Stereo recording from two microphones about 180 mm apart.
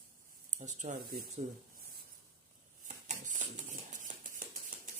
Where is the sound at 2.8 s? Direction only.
45° right (ahead or behind).